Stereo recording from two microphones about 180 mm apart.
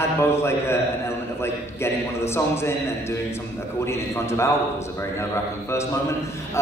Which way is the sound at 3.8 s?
15° left (ahead or behind).